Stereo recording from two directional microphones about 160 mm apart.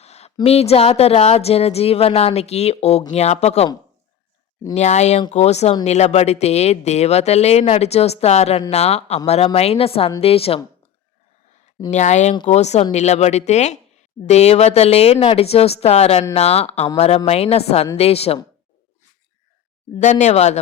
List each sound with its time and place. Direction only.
0.0 s a sound: 45° left (ahead or behind)
0.4 s speech: 40° left (ahead or behind)
4.7 s speech: 45° left (ahead or behind)
11.9 s speech: 45° left (ahead or behind)
20.0 s speech: 50° left (ahead or behind)